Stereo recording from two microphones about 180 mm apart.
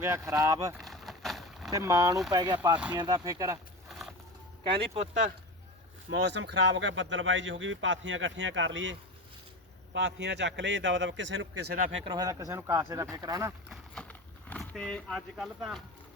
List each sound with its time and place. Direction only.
0.0 s speech: 15° right (ahead or behind)
0.8 s boat: centre (ahead or behind)
1.7 s speech: 20° right (ahead or behind)
3.8 s a sound: centre (ahead or behind)
4.8 s speech: 40° right (ahead or behind)
6.1 s speech: 75° right (ahead or behind); by 9.0 s 90° right
9.9 s a man's voice: 75° right (ahead or behind); by 11.4 s 90° right
12.0 s speech: 20° right (ahead or behind)
13.7 s a sound: 5° left (ahead or behind)